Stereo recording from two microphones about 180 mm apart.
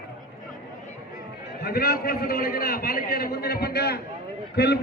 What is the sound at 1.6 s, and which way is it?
A man's voice, 60° left (ahead or behind).